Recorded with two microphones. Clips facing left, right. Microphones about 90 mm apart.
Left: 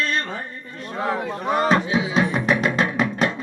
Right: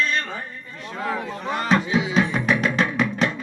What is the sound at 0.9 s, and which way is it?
Speech, 30° left (ahead or behind).